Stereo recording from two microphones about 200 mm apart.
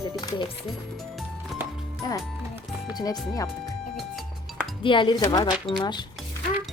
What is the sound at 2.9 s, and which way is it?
Speech, 20° left (ahead or behind).